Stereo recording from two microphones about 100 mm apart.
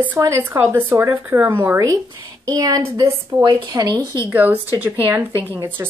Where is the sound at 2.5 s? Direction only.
35° right (ahead or behind).